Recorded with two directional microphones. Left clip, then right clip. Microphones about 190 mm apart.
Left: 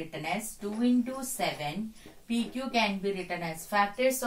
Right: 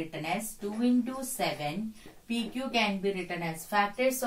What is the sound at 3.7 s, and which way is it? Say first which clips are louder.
Speech: left 1 dB; 15° left (ahead or behind).